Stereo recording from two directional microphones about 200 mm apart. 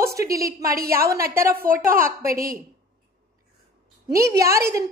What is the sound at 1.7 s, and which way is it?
Speech, 45° right (ahead or behind).